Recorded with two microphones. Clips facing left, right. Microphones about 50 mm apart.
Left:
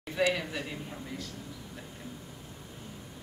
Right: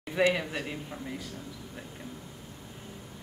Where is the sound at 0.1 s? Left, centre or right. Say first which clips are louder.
Right 3 dB; centre.